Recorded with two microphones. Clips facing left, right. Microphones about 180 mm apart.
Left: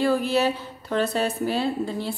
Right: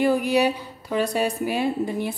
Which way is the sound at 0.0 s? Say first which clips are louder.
Right 2 dB; 15° right (ahead or behind).